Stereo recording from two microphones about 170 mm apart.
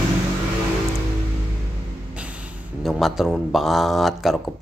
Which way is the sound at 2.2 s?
10° right (ahead or behind).